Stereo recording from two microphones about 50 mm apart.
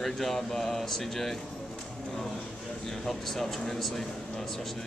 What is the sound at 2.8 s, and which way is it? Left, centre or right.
Speech, centre.